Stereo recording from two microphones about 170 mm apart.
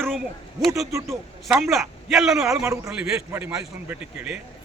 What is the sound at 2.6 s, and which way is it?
A man's voice, 15° right (ahead or behind).